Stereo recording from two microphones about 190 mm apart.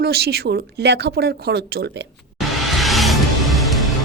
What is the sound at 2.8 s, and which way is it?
Music, centre (ahead or behind).